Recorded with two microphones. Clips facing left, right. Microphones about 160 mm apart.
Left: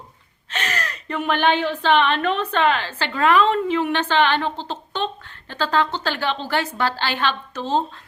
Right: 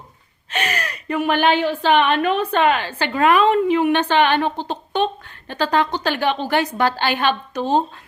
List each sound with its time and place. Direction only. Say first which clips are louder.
0.5 s speech: right 3 dB; 10° right (ahead or behind)